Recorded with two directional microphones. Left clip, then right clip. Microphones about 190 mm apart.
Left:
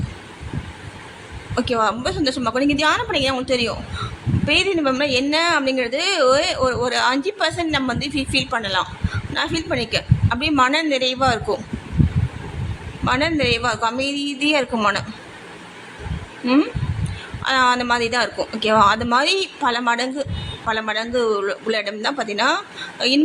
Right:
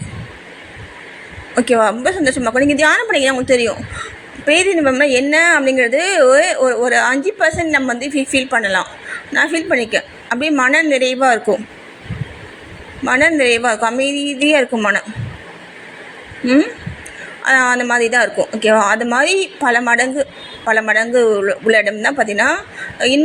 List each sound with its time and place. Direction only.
1.5 s a woman's voice: 15° right (ahead or behind)
13.1 s a woman's voice: 10° right (ahead or behind)
17.4 s a woman's voice: 10° right (ahead or behind)